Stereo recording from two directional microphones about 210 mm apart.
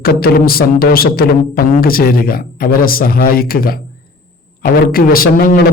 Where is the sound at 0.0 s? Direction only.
45° left (ahead or behind).